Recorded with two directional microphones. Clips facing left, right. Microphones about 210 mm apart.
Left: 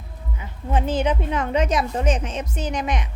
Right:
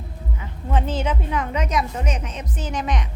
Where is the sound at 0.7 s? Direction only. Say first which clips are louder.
Left 2 dB; 15° left (ahead or behind).